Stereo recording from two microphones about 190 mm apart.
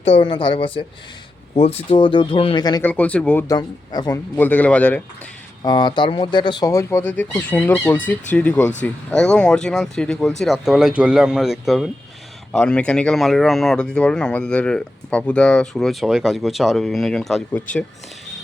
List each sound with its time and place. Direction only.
0.0 s speech: 30° left (ahead or behind)
2.8 s speech: 5° left (ahead or behind)
3.9 s speech: 20° left (ahead or behind)
4.4 s speech: 10° left (ahead or behind)
5.6 s speech: 25° left (ahead or behind); by 17.6 s centre (ahead or behind)